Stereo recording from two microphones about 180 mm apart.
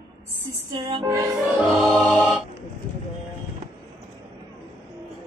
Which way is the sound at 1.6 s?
Centre (ahead or behind).